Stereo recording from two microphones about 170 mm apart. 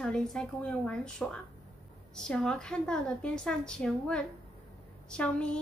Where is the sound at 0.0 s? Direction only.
5° left (ahead or behind).